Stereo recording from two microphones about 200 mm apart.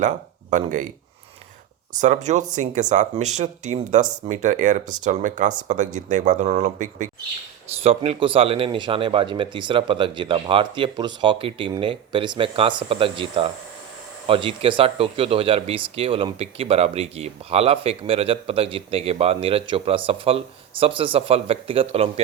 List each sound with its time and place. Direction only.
0.5 s speech: 40° right (ahead or behind)
2.0 s speech: 35° right (ahead or behind)